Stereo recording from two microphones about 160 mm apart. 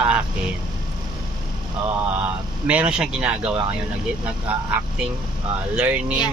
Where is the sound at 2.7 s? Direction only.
5° right (ahead or behind).